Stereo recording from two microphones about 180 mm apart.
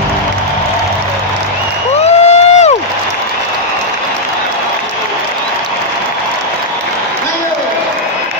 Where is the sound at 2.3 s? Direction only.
35° left (ahead or behind).